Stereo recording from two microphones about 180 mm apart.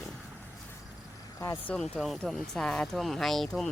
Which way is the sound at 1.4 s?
15° left (ahead or behind).